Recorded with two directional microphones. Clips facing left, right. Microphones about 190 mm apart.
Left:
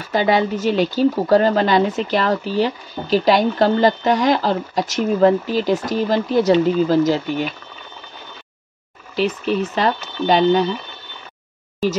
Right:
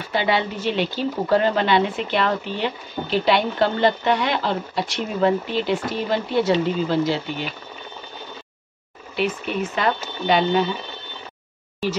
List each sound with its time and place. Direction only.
0.1 s speech: 45° left (ahead or behind)
9.1 s speech: 35° left (ahead or behind)